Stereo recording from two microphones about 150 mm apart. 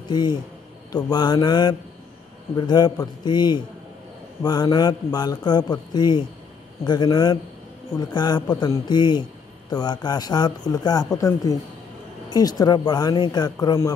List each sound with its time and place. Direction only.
0.1 s a man's voice: 30° left (ahead or behind)